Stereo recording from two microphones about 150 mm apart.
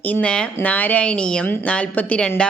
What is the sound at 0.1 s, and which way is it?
Speech, 10° left (ahead or behind).